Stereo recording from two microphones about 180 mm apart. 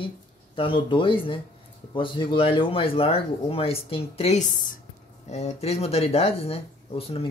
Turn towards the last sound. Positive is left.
turn(degrees=30)  # may be behind; listen again after turning